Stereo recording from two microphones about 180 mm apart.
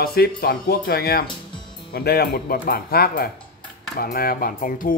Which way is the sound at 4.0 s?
55° left (ahead or behind).